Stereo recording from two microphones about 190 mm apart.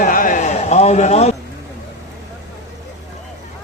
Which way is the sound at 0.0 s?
45° left (ahead or behind).